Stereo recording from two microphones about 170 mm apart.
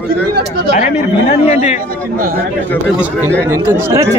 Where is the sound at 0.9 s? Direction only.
40° left (ahead or behind).